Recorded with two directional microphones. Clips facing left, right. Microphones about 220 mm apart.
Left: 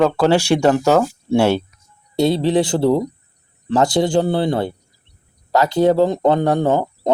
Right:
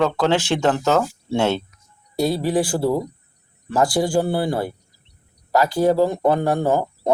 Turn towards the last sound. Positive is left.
turn(degrees=20)  # may be behind; listen again after turning